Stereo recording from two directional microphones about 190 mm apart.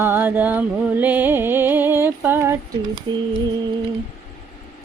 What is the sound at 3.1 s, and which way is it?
Mantra, 25° right (ahead or behind).